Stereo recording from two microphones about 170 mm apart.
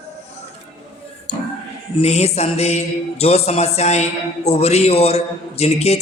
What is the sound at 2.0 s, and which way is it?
Music, 40° left (ahead or behind).